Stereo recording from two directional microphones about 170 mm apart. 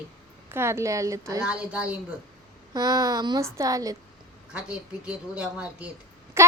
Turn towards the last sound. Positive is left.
turn(degrees=-15)  # may be behind; listen again after turning